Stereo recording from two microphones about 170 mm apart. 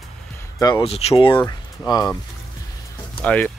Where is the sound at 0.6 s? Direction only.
25° left (ahead or behind).